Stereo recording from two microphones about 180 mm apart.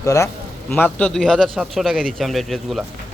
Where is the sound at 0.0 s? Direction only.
15° left (ahead or behind).